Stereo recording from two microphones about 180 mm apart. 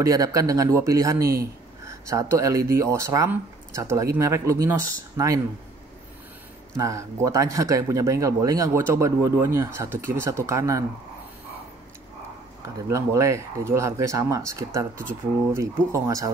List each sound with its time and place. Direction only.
0.0 s speech: 20° right (ahead or behind)
1.2 s speech: 55° right (ahead or behind)
1.9 s speech: 15° right (ahead or behind)
6.7 s speech: 15° right (ahead or behind)
12.8 s speech: 15° right (ahead or behind)